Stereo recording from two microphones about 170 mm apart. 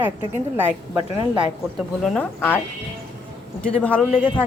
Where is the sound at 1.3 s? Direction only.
Centre (ahead or behind).